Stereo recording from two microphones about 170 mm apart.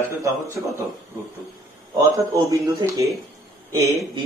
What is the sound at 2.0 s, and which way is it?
Speech, 20° right (ahead or behind).